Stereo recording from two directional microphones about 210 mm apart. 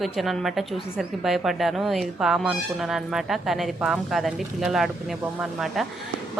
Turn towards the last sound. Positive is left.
turn(degrees=0)  # may be behind; listen again after turning